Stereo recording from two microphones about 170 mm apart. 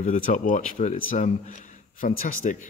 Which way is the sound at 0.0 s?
45° left (ahead or behind).